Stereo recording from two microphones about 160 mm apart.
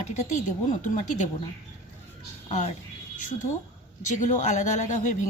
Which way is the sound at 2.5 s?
45° left (ahead or behind).